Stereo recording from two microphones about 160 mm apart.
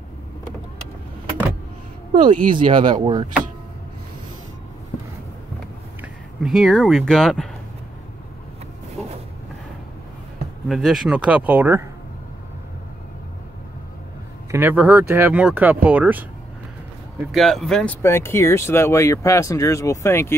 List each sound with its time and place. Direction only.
2.2 s speech: 30° right (ahead or behind)
5.9 s speech: centre (ahead or behind)
10.7 s speech: centre (ahead or behind)
14.5 s speech: 10° right (ahead or behind)
17.3 s speech: centre (ahead or behind)
18.0 s speech: 15° left (ahead or behind)